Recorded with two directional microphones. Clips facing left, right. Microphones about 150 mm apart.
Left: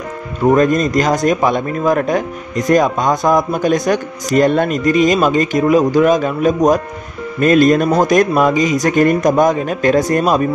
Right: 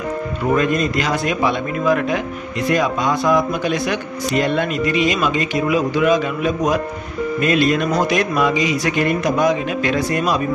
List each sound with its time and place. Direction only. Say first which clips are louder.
0.6 s a man's voice: left 5 dB; 45° left (ahead or behind)